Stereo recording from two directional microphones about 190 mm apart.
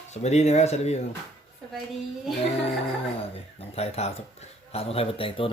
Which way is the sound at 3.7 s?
30° left (ahead or behind).